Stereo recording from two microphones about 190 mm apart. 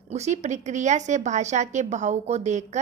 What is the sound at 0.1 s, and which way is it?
A woman's voice, 35° right (ahead or behind).